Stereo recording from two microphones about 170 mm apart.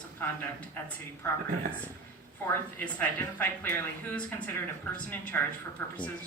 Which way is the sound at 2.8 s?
10° left (ahead or behind).